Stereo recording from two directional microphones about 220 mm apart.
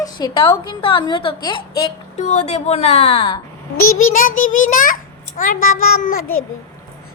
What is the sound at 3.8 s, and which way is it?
Speech, 70° left (ahead or behind).